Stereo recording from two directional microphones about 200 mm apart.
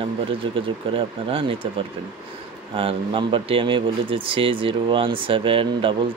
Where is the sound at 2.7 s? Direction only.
25° right (ahead or behind).